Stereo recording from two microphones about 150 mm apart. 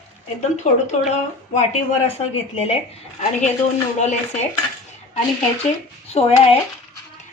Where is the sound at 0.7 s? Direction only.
50° left (ahead or behind).